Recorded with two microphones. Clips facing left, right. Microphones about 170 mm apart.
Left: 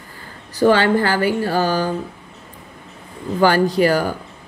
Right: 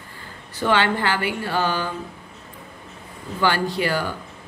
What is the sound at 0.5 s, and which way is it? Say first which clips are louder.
A woman's voice: left 7 dB; 40° left (ahead or behind).